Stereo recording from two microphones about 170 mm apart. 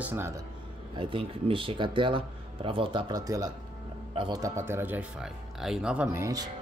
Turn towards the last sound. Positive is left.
turn(degrees=-20)  # may be behind; listen again after turning